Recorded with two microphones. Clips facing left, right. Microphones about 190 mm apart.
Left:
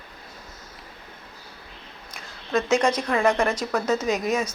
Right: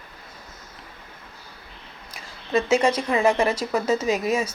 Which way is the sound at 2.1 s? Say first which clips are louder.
Right 2 dB; 10° right (ahead or behind).